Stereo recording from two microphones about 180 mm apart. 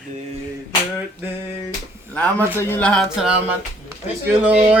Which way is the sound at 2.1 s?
10° left (ahead or behind).